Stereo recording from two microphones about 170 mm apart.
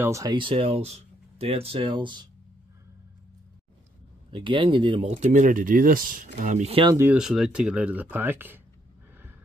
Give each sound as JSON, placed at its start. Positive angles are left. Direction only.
{"t": 0.0, "sound": "speech", "side_deg": -20}
{"t": 4.3, "sound": "speech", "side_deg": -30}
{"t": 7.0, "sound": "speech", "side_deg": -5}